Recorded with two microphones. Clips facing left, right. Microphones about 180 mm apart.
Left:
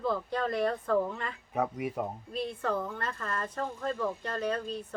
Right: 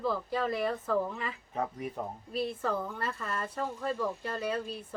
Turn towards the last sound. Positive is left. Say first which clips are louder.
# left 1 dB
turn(degrees=-10)  # may be behind; listen again after turning